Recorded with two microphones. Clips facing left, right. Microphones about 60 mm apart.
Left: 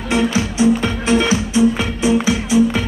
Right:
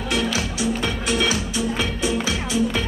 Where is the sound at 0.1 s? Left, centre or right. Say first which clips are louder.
Left 7 dB; left.